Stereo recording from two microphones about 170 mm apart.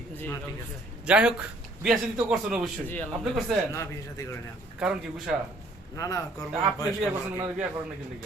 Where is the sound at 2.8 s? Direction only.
10° left (ahead or behind).